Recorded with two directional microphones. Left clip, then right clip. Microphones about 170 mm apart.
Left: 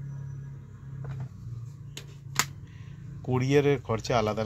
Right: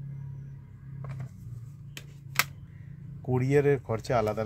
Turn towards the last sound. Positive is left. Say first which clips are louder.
# left 1 dB
turn(degrees=-25)  # may be behind; listen again after turning